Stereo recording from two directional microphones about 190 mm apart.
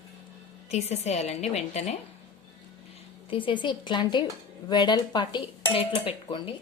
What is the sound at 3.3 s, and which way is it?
Speech, 25° left (ahead or behind).